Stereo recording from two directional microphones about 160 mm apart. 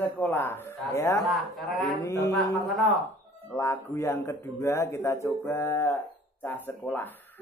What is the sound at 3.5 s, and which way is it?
A man's voice, 20° left (ahead or behind).